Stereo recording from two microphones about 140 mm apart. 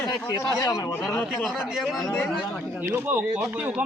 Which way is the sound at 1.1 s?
Centre (ahead or behind).